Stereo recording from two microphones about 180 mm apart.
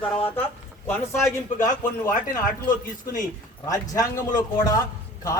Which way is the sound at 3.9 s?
20° left (ahead or behind).